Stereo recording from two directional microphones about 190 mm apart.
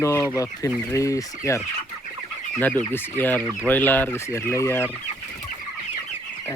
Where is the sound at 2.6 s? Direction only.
10° left (ahead or behind).